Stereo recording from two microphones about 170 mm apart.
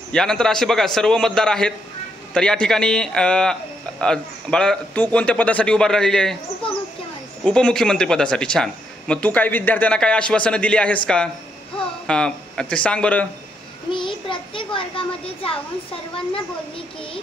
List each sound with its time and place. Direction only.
0.1 s a man's voice: 5° left (ahead or behind)
7.4 s speech: 5° left (ahead or behind)
12.1 s speech: 5° left (ahead or behind)
13.9 s a child's voice: 30° left (ahead or behind)